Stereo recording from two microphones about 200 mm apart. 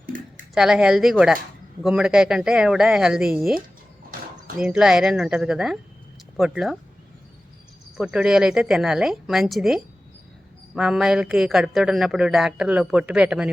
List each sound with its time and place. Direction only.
0.0 s a sound: 40° right (ahead or behind)
0.5 s a man's voice: 5° right (ahead or behind)
7.9 s a man's voice: 5° right (ahead or behind)